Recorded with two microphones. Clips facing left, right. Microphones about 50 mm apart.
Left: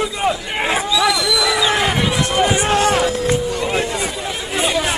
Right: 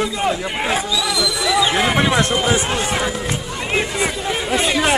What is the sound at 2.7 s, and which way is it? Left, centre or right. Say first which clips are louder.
Speech: left 5 dB; centre.